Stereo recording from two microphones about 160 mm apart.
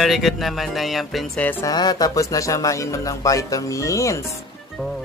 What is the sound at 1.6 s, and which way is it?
Speech, 25° left (ahead or behind).